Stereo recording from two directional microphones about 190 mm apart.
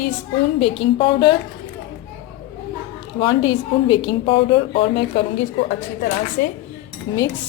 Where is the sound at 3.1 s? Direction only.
25° left (ahead or behind).